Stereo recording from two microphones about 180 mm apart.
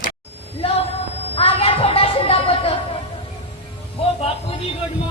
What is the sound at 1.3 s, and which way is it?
Music, 30° left (ahead or behind).